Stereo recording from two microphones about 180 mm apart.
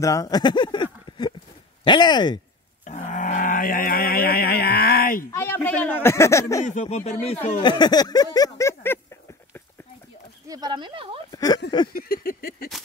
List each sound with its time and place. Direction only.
0.0 s speech: 20° left (ahead or behind)
1.1 s a sound: 25° left (ahead or behind)
1.9 s speech: 25° left (ahead or behind)
2.8 s a sound: 40° left (ahead or behind)
5.3 s speech: 15° left (ahead or behind)
6.6 s speech: 40° left (ahead or behind)
7.6 s speech: 25° left (ahead or behind)
10.5 s speech: 25° right (ahead or behind)
11.3 s speech: 20° left (ahead or behind)
11.9 s a sound: 55° left (ahead or behind)